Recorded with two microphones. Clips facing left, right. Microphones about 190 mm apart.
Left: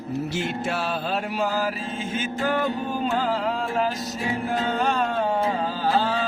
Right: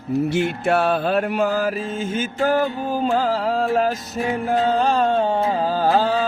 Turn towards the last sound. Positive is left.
turn(degrees=-40)  # may be behind; listen again after turning